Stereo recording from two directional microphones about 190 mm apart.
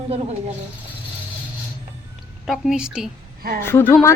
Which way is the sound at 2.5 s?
5° right (ahead or behind).